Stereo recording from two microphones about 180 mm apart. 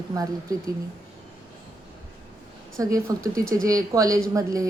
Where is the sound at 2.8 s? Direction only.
20° right (ahead or behind).